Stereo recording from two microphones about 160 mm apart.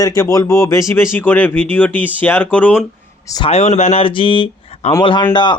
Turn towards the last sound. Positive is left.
turn(degrees=30)  # may be behind; listen again after turning